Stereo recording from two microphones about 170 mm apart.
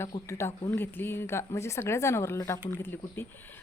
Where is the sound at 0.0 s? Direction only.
15° left (ahead or behind).